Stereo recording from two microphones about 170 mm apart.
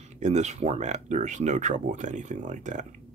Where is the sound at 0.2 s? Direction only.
40° right (ahead or behind).